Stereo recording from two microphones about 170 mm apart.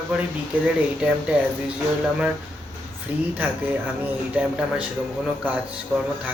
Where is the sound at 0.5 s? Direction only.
10° right (ahead or behind).